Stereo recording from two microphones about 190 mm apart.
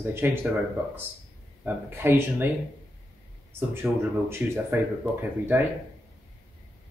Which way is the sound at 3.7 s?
10° right (ahead or behind).